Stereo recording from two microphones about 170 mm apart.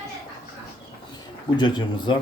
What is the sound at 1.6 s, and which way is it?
Speech, 25° left (ahead or behind).